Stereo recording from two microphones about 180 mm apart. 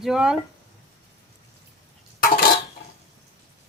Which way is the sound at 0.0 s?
5° right (ahead or behind).